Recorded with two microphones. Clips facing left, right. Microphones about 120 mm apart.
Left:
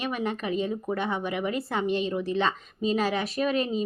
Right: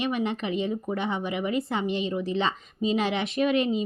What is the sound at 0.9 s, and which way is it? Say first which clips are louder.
Speech: even; 15° right (ahead or behind).